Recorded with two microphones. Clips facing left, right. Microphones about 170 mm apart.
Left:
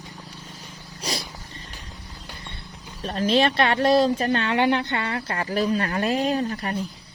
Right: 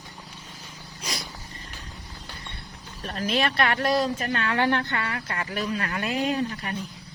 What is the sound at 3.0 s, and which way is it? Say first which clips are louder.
Speech: left 6 dB; 30° left (ahead or behind).